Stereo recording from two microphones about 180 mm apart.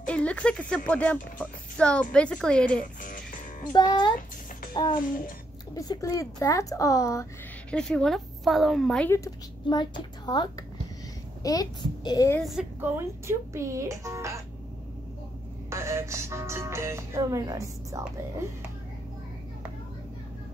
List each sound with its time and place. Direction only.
0.0 s speech: 5° left (ahead or behind)
2.8 s music: 50° left (ahead or behind)
3.7 s a woman's voice: 25° left (ahead or behind)
7.7 s speech: 5° left (ahead or behind)
9.1 s a woman's voice: 20° left (ahead or behind)
12.4 s speech: centre (ahead or behind)
15.7 s speech: 15° right (ahead or behind)